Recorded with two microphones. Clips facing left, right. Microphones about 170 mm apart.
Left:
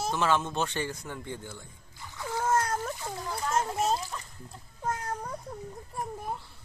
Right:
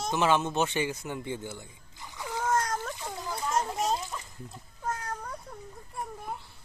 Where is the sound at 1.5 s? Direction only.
15° right (ahead or behind).